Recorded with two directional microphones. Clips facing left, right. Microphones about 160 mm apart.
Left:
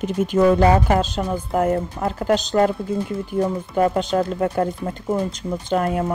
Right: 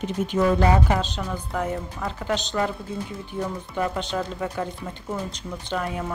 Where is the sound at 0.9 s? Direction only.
45° left (ahead or behind).